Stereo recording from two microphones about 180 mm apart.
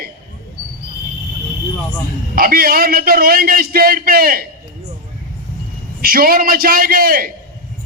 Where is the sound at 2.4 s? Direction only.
55° right (ahead or behind).